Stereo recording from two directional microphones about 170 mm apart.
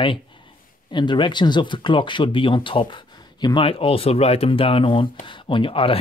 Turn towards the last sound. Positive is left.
turn(degrees=30)  # may be behind; listen again after turning